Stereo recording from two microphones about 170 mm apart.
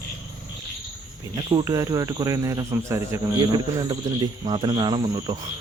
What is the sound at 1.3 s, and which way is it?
Speech, 20° right (ahead or behind).